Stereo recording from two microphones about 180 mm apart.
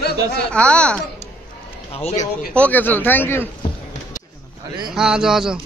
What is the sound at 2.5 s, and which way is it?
Speech, 10° left (ahead or behind).